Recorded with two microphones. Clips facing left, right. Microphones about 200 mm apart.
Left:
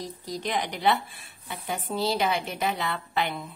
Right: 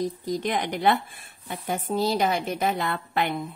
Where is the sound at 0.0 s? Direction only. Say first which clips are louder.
Right 6 dB; 50° right (ahead or behind).